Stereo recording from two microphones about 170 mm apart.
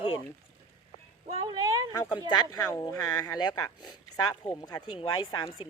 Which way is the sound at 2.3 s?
25° left (ahead or behind).